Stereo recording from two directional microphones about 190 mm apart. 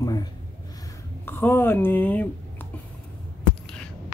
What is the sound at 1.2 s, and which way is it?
Speech, 10° left (ahead or behind).